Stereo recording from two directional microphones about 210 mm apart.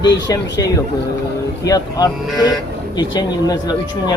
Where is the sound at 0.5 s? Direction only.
15° left (ahead or behind).